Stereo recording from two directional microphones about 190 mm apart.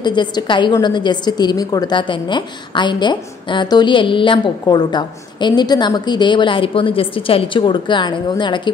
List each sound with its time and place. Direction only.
0.0 s a woman's voice: 25° left (ahead or behind)